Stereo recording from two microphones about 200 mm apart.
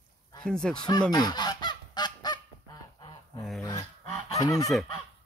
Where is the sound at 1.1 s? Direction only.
20° left (ahead or behind).